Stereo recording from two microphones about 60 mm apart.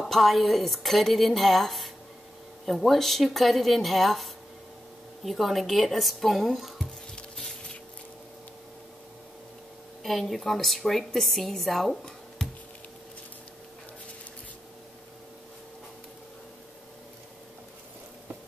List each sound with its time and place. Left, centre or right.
0.0 s a woman's voice: centre
7.2 s a sound: centre
10.0 s a woman's voice: centre